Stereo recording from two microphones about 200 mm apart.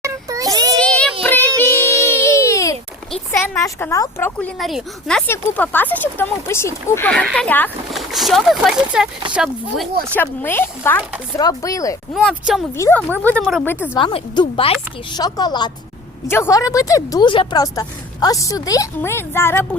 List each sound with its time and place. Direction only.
0.0 s child singing: 15° right (ahead or behind)
0.8 s child singing: 5° left (ahead or behind)
1.5 s music: 10° left (ahead or behind)
3.3 s a woman's voice: 15° left (ahead or behind); by 9.9 s centre (ahead or behind)
10.2 s a woman's voice: 10° left (ahead or behind)
12.1 s speech: centre (ahead or behind)
12.7 s a woman's voice: 10° left (ahead or behind)
13.9 s a woman's voice: 25° left (ahead or behind)